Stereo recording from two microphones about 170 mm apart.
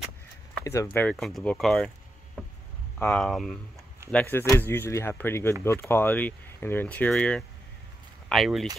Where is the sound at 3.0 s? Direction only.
5° left (ahead or behind).